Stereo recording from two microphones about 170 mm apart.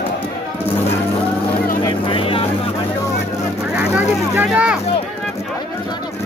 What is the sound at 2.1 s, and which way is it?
Vehicle, 30° left (ahead or behind).